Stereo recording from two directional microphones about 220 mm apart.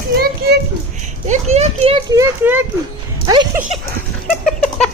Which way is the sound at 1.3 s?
30° right (ahead or behind).